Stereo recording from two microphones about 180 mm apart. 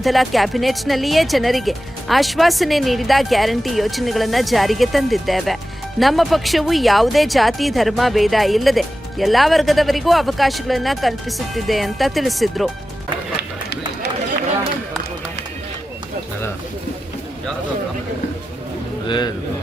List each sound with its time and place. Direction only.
0.0 s speech: centre (ahead or behind)
19.0 s a man's voice: 25° left (ahead or behind)